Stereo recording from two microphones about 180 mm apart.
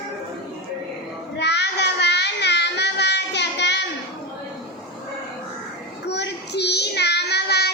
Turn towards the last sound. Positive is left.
turn(degrees=65)  # may be behind; listen again after turning